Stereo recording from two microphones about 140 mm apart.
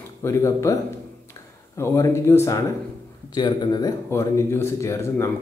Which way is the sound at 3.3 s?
30° left (ahead or behind).